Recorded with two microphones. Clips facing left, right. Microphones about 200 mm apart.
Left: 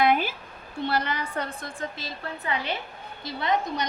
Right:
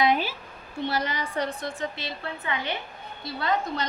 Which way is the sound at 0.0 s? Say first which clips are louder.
Left 1 dB; 55° left (ahead or behind).